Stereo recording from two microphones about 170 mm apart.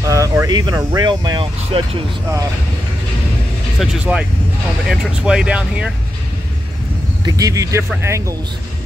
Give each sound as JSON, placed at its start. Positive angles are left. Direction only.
{"t": 0.1, "sound": "speech", "side_deg": -20}
{"t": 3.8, "sound": "speech", "side_deg": -5}
{"t": 7.2, "sound": "speech", "side_deg": -20}